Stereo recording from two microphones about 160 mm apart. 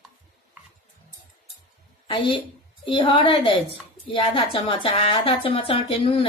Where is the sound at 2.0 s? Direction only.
30° left (ahead or behind).